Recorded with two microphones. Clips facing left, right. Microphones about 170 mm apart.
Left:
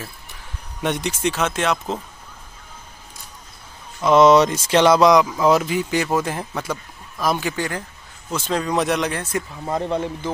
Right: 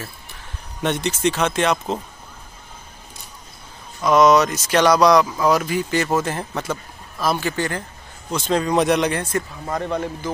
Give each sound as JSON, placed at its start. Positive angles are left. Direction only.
{"t": 0.8, "sound": "speech", "side_deg": 10}
{"t": 4.0, "sound": "speech", "side_deg": 25}
{"t": 9.7, "sound": "speech", "side_deg": 25}